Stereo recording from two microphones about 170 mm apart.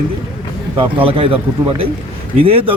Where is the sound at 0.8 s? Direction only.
30° right (ahead or behind).